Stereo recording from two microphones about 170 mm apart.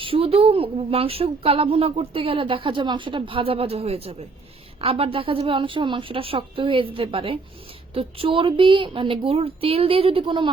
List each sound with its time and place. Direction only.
0.0 s speech: 35° right (ahead or behind)